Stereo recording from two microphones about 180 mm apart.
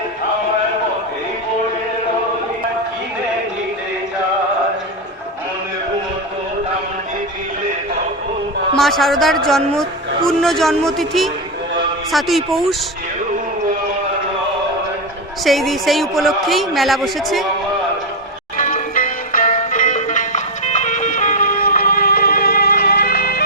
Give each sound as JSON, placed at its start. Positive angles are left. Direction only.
{"t": 8.7, "sound": "a man's voice", "side_deg": 0}
{"t": 15.4, "sound": "a man's voice", "side_deg": 0}
{"t": 18.5, "sound": "music", "side_deg": 45}